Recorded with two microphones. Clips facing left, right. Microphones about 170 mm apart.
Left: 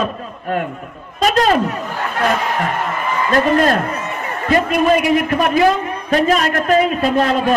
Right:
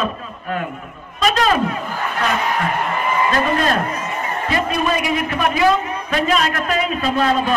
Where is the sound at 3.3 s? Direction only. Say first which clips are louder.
Left 8 dB; 45° left (ahead or behind).